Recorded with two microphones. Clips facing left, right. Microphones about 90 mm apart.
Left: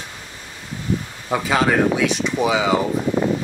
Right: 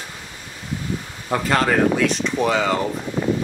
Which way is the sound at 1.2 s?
5° left (ahead or behind).